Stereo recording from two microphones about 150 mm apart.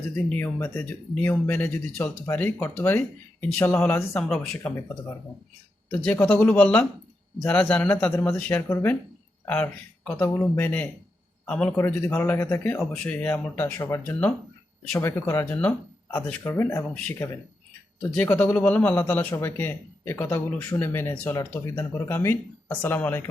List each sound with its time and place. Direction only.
0.2 s speech: 10° left (ahead or behind)
5.9 s a man's voice: 10° left (ahead or behind)